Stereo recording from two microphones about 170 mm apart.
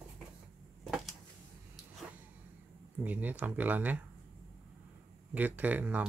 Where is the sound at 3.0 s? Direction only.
10° right (ahead or behind).